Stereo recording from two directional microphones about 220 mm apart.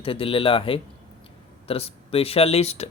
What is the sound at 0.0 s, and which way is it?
Speech, 25° left (ahead or behind).